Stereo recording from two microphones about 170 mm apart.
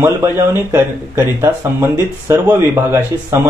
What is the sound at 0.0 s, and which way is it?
Speech, 15° right (ahead or behind).